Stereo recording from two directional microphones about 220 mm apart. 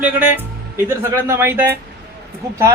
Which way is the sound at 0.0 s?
5° right (ahead or behind).